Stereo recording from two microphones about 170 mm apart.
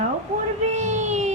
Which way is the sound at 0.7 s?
45° right (ahead or behind).